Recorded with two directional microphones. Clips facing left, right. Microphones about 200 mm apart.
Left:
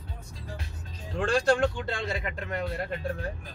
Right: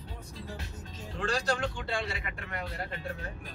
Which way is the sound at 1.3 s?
50° left (ahead or behind).